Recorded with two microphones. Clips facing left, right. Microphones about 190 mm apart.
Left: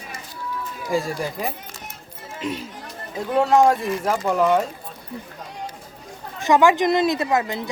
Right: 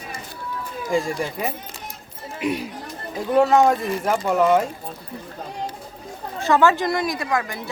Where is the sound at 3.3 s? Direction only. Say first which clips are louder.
Right 1 dB; 5° right (ahead or behind).